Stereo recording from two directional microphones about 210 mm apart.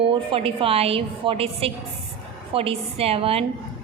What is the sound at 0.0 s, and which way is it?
A woman's voice, 25° right (ahead or behind).